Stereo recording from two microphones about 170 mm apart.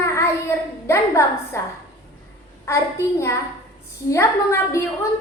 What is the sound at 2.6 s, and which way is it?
A woman's voice, 15° left (ahead or behind).